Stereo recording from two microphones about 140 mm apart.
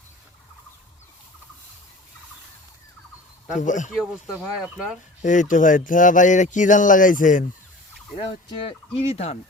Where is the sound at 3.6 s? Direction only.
65° left (ahead or behind).